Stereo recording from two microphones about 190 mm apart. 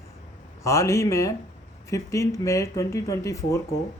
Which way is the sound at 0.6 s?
15° left (ahead or behind).